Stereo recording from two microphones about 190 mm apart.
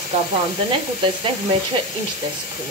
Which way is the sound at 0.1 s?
35° right (ahead or behind).